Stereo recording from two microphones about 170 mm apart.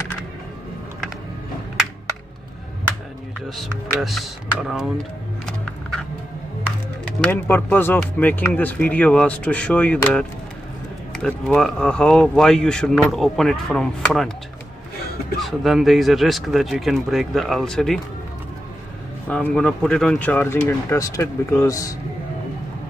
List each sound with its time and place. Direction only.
3.5 s speech: centre (ahead or behind)
7.2 s speech: 10° left (ahead or behind)
15.4 s speech: centre (ahead or behind)
19.2 s speech: 5° left (ahead or behind)